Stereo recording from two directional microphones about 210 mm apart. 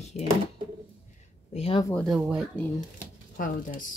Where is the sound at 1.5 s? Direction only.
25° left (ahead or behind).